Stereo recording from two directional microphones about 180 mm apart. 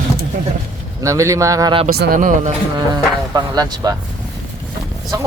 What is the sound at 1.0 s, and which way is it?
Speech, 15° right (ahead or behind).